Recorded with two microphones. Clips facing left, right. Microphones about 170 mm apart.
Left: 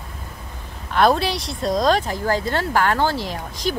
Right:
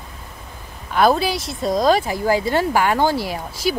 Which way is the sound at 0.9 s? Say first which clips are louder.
Right 1 dB; 5° right (ahead or behind).